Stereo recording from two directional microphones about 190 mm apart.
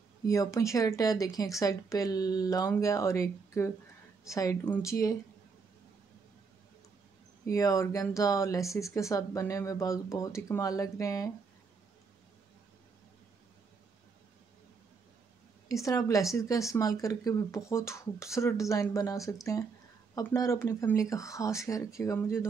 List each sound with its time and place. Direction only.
0.3 s a woman's voice: 15° left (ahead or behind)
7.4 s a woman's voice: 15° left (ahead or behind)
15.7 s a woman's voice: 15° left (ahead or behind)